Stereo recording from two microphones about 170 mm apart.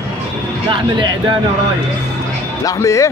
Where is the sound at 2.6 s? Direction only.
20° left (ahead or behind).